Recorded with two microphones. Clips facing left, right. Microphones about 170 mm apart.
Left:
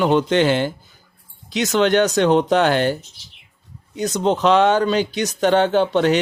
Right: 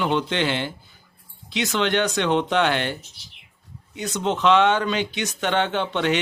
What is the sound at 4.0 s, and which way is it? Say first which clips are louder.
Speech: left 5 dB; 40° left (ahead or behind).